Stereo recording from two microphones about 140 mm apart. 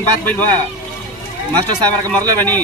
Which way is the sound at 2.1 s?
10° left (ahead or behind).